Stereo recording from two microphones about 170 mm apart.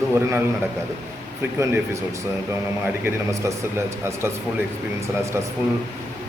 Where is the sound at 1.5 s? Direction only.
15° right (ahead or behind).